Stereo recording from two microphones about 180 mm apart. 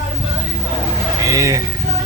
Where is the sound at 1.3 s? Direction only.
20° right (ahead or behind).